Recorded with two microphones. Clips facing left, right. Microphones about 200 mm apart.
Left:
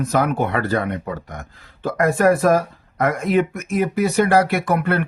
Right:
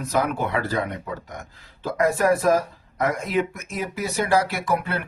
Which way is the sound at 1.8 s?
55° left (ahead or behind).